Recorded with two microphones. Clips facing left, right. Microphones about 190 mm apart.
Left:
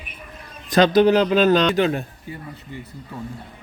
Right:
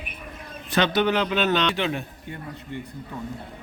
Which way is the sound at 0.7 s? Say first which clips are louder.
Left 7 dB; 35° left (ahead or behind).